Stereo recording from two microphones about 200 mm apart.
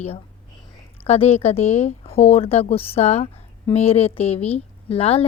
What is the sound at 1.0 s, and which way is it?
Speech, 30° left (ahead or behind).